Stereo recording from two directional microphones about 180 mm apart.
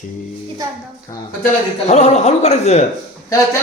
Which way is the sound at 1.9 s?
40° left (ahead or behind).